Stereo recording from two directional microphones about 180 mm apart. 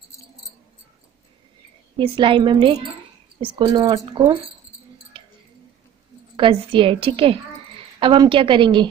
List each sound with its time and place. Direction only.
2.0 s speech: 30° right (ahead or behind)
5.1 s a sound: 30° right (ahead or behind)
6.3 s a woman's voice: 30° right (ahead or behind)